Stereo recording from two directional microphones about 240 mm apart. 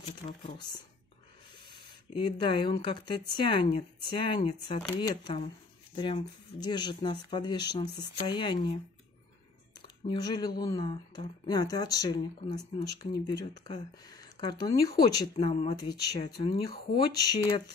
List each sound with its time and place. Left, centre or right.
0.4 s speech: left
1.8 s speech: centre
6.6 s speech: centre
10.0 s speech: centre
15.3 s speech: left